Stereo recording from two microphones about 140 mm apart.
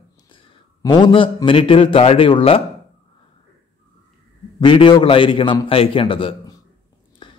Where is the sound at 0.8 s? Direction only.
30° left (ahead or behind).